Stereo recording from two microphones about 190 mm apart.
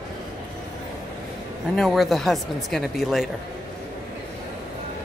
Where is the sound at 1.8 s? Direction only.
Centre (ahead or behind).